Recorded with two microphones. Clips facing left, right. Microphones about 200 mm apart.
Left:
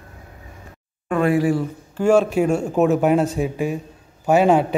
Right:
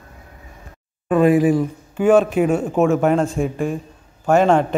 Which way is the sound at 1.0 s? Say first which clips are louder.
Right 4 dB; 15° right (ahead or behind).